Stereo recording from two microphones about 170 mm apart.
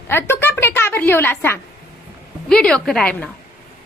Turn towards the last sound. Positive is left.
turn(degrees=5)  # may be behind; listen again after turning